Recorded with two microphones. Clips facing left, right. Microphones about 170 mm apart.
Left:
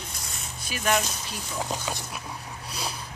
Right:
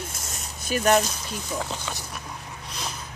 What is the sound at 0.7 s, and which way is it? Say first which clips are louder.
Speech: right 6 dB; 40° right (ahead or behind).